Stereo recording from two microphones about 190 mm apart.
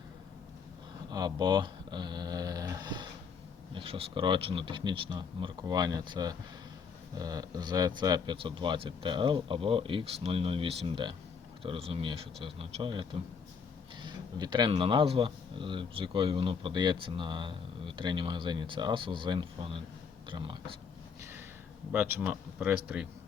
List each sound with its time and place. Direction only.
1.1 s dog: 20° right (ahead or behind)
3.8 s speech: 30° right (ahead or behind)
21.9 s speech: 10° right (ahead or behind)